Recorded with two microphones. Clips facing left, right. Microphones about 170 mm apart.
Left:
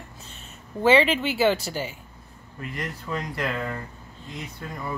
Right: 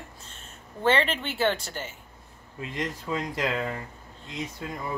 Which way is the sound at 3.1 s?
15° right (ahead or behind).